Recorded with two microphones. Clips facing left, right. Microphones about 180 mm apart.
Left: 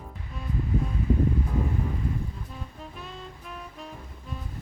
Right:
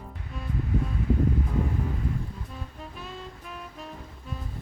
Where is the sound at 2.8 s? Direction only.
Centre (ahead or behind).